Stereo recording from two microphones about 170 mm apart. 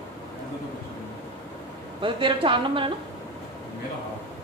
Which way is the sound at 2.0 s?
30° right (ahead or behind).